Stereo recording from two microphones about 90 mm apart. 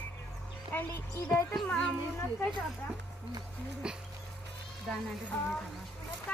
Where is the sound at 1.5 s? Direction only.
10° left (ahead or behind).